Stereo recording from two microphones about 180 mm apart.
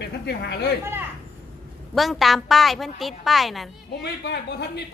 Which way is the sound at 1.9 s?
Centre (ahead or behind).